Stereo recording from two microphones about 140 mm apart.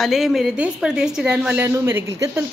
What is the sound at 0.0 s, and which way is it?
Speech, centre (ahead or behind).